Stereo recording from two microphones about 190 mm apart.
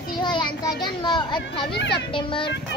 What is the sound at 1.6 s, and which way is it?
Speech, 60° left (ahead or behind).